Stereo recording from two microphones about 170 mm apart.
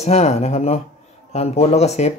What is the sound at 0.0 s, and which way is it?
Speech, 40° left (ahead or behind).